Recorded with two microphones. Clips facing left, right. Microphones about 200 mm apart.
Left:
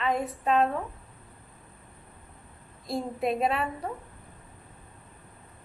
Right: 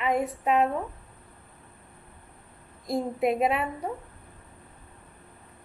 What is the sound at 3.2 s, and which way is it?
Speech, 20° right (ahead or behind).